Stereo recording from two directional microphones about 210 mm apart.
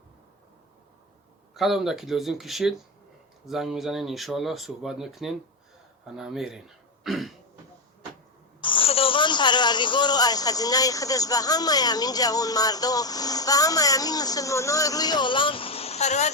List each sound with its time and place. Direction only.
1.5 s speech: centre (ahead or behind)
8.6 s speech: 25° left (ahead or behind)